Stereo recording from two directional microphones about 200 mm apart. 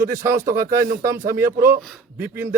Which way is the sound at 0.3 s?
50° right (ahead or behind).